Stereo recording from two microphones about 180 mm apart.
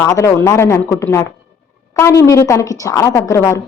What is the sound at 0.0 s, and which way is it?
A woman's voice, 15° left (ahead or behind).